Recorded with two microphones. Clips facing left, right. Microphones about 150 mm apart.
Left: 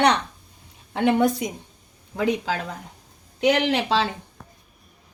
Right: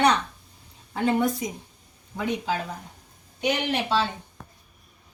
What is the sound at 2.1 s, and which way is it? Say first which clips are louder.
Speech: left 4 dB; 90° left.